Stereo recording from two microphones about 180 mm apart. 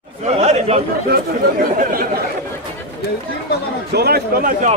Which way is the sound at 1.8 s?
55° right (ahead or behind).